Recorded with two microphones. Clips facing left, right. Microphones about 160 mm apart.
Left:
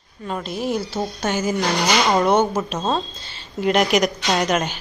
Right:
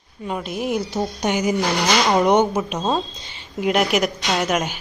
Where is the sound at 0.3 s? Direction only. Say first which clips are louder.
Even; 10° right (ahead or behind).